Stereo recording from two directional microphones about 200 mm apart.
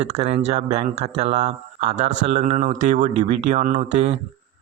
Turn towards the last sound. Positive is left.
turn(degrees=-35)  # may be behind; listen again after turning